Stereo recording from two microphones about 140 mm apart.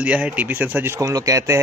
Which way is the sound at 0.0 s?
10° right (ahead or behind).